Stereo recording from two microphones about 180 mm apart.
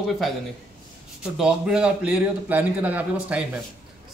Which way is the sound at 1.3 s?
5° right (ahead or behind).